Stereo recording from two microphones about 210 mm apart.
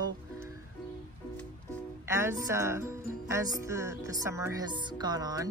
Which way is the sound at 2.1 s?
10° right (ahead or behind).